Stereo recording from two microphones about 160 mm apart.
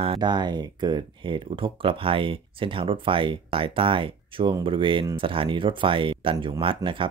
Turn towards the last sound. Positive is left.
turn(degrees=-30)  # may be behind; listen again after turning